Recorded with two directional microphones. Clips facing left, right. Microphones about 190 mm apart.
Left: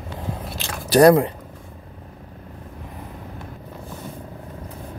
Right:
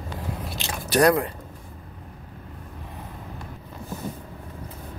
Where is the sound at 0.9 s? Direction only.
35° left (ahead or behind).